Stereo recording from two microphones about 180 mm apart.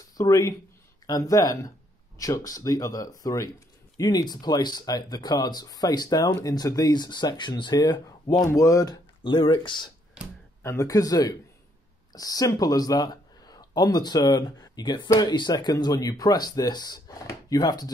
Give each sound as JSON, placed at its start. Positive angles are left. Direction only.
{"t": 0.2, "sound": "speech", "side_deg": 20}
{"t": 10.6, "sound": "speech", "side_deg": 15}